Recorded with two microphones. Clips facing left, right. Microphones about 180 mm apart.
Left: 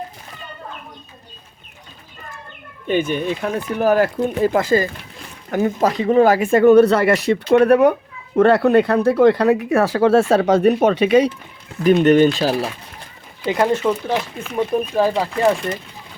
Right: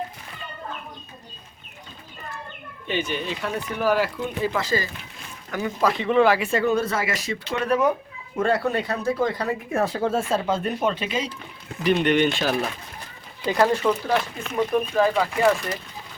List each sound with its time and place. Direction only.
2.8 s speech: 50° left (ahead or behind)
11.8 s speech: 45° left (ahead or behind)
13.5 s speech: 20° left (ahead or behind)
13.8 s speech: 5° left (ahead or behind)
14.9 s speech: 30° left (ahead or behind)